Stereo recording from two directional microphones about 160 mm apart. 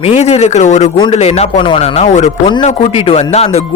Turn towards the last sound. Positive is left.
turn(degrees=40)  # may be behind; listen again after turning